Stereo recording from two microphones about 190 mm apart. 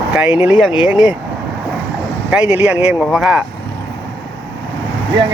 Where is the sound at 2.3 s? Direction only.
5° right (ahead or behind).